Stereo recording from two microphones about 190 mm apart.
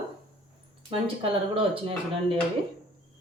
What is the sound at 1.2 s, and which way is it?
Speech, 30° right (ahead or behind).